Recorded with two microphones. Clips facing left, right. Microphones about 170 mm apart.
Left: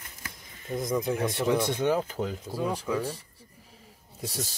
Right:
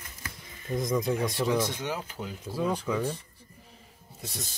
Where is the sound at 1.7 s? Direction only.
55° left (ahead or behind).